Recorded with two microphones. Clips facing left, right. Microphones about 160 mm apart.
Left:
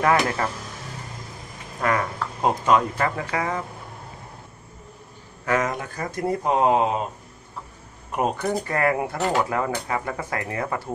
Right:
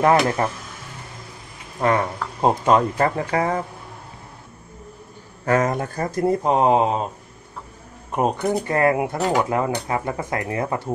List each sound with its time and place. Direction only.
0.0 s speech: 25° right (ahead or behind)
1.8 s speech: 30° right (ahead or behind)
5.4 s speech: 40° right (ahead or behind)
6.2 s speech: 25° right (ahead or behind)
8.2 s speech: 20° right (ahead or behind)